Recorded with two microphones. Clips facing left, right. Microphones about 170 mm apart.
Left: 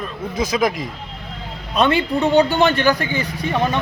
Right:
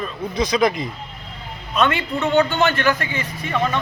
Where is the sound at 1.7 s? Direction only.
35° left (ahead or behind).